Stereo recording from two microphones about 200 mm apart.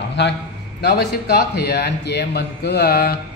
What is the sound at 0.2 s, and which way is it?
A man's voice, 60° left (ahead or behind).